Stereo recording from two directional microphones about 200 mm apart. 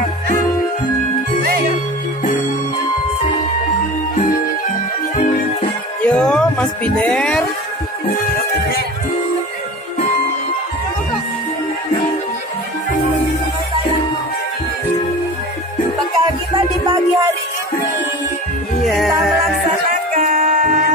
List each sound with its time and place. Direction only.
6.0 s music: 5° left (ahead or behind)
16.5 s music: 20° right (ahead or behind)
18.9 s music: centre (ahead or behind)
19.9 s dog: 40° right (ahead or behind)